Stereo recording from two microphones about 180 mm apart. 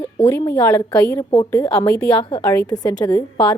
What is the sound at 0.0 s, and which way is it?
A woman's voice, 15° left (ahead or behind).